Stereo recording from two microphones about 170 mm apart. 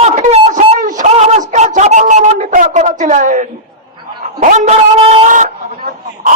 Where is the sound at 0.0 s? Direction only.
40° right (ahead or behind).